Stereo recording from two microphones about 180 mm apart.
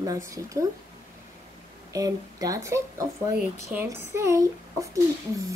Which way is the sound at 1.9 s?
20° right (ahead or behind).